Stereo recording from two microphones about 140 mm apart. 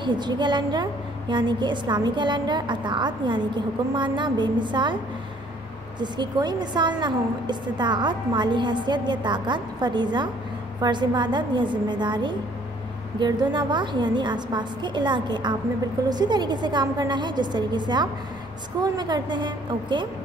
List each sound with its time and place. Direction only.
0.0 s a woman's voice: 35° right (ahead or behind)
5.9 s a woman's voice: 30° right (ahead or behind)